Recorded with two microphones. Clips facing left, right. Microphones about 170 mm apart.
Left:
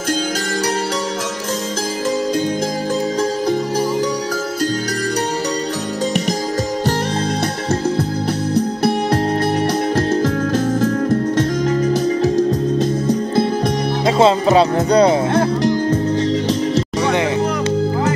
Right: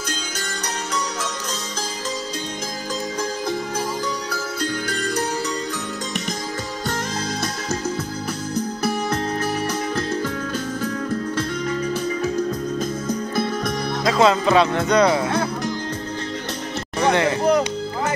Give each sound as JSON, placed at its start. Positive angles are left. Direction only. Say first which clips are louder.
{"t": 14.0, "sound": "speech", "louder": "left 4 dB", "side_deg": 30}
{"t": 17.0, "sound": "music", "louder": "right 1 dB", "side_deg": 15}